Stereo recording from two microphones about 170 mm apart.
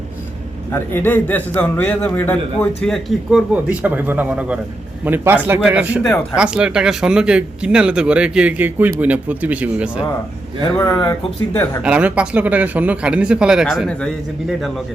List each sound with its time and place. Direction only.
0.7 s a man's voice: 10° left (ahead or behind); by 10.1 s 5° right (ahead or behind)
10.8 s speech: 20° left (ahead or behind)
11.8 s speech: 10° right (ahead or behind)